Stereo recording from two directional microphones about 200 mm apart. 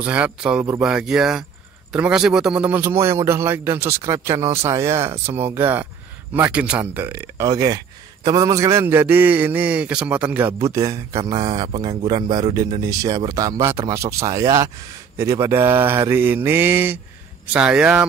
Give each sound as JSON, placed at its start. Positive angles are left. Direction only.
{"t": 0.0, "sound": "speech", "side_deg": -5}